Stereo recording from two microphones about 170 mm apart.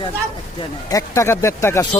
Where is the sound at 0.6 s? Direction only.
20° left (ahead or behind).